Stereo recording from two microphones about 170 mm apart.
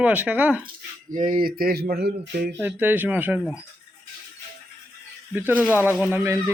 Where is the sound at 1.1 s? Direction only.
50° right (ahead or behind); by 2.4 s 65° right (ahead or behind).